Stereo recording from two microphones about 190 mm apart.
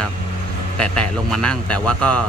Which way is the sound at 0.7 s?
5° left (ahead or behind).